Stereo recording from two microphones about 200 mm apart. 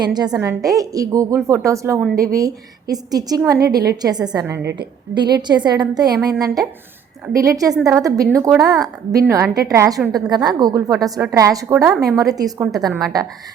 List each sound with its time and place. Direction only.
0.0 s a woman's voice: 20° right (ahead or behind)
11.7 s a woman's voice: 5° right (ahead or behind)
12.0 s a woman's voice: 15° right (ahead or behind)